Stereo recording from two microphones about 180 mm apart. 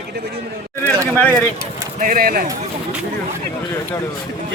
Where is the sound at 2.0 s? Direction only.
50° right (ahead or behind).